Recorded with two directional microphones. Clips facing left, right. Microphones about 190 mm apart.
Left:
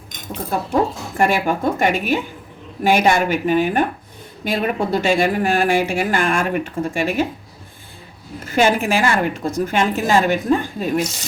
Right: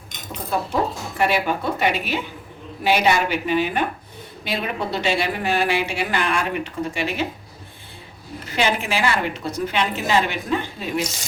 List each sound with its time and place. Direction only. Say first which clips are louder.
0.7 s speech: left 4 dB; 45° left (ahead or behind)
8.4 s speech: left 6 dB; 45° left (ahead or behind)